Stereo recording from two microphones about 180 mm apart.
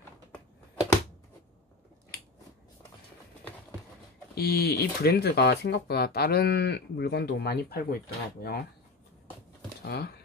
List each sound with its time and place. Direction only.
4.4 s speech: 60° left (ahead or behind)
9.8 s speech: 60° left (ahead or behind)